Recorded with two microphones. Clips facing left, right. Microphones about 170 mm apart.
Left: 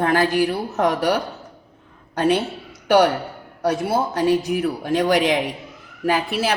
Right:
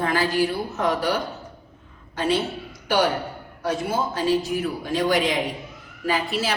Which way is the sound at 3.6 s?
70° left (ahead or behind).